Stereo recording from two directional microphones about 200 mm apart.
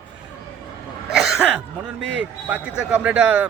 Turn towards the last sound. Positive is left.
turn(degrees=-5)  # may be behind; listen again after turning